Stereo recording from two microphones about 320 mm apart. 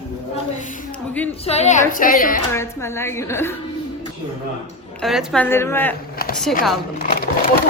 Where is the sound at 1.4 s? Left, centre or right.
Centre.